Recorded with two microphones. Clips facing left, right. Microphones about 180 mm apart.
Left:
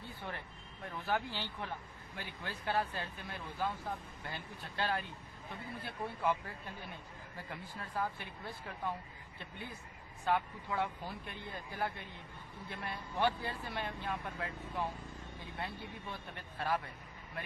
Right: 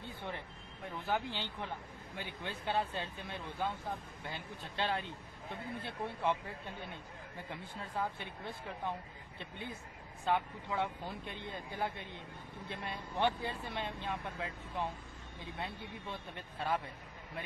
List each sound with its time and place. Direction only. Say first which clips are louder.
1.0 s speech: even; 15° right (ahead or behind)
8.0 s speech: even; 20° right (ahead or behind)
10.2 s speech: even; 20° right (ahead or behind)